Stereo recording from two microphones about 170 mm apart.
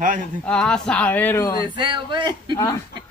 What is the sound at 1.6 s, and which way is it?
Speech, 30° right (ahead or behind).